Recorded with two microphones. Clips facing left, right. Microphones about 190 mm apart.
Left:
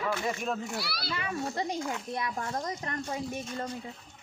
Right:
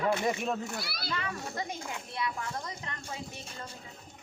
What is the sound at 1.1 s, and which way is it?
Speech, 15° left (ahead or behind).